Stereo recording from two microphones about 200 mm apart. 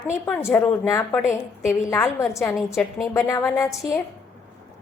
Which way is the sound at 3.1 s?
15° left (ahead or behind).